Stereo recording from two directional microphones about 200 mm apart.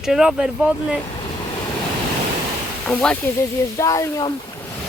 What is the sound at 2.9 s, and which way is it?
Speech, 5° left (ahead or behind).